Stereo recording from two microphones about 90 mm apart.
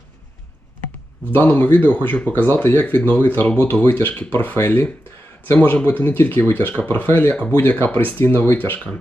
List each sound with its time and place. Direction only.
1.3 s speech: 25° left (ahead or behind)